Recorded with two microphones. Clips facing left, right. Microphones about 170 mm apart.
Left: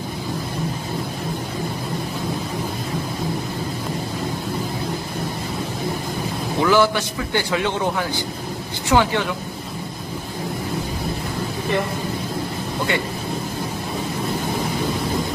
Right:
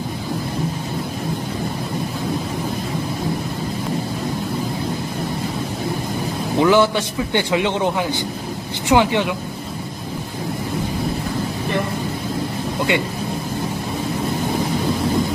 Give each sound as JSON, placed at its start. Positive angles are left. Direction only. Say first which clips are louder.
{"t": 6.6, "sound": "a man's voice", "louder": "right 2 dB", "side_deg": -20}